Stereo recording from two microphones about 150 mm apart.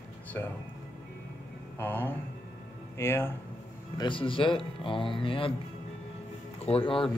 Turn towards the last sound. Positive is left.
turn(degrees=35)  # may be behind; listen again after turning